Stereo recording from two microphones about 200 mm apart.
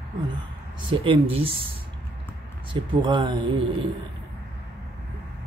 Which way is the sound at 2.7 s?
25° right (ahead or behind).